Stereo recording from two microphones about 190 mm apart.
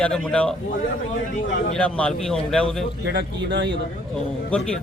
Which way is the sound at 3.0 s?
65° right (ahead or behind).